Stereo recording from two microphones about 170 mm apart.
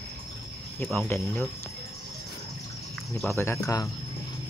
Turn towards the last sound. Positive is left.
turn(degrees=20)  # may be behind; listen again after turning